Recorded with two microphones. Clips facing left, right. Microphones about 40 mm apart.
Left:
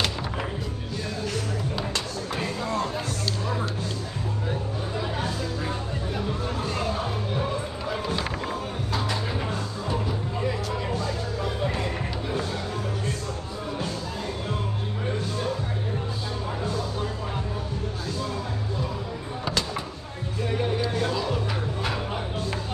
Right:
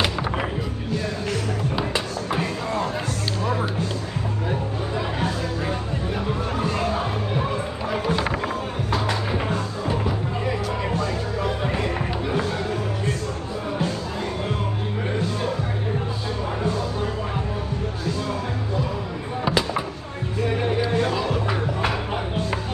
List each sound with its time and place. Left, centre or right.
2.3 s a sound: centre
6.6 s music: right
7.9 s run: right
9.0 s music: right
19.4 s music: centre